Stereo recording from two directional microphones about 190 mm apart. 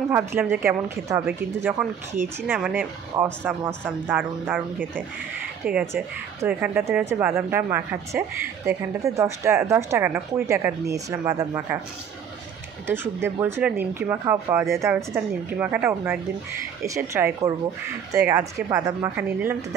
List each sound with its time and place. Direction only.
0.1 s speech: 10° right (ahead or behind)
12.8 s speech: 10° right (ahead or behind)